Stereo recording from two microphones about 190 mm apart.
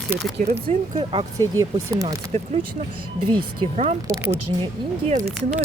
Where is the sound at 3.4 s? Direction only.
30° right (ahead or behind).